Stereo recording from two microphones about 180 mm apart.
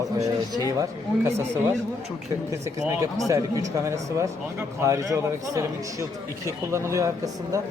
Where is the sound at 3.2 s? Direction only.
20° right (ahead or behind).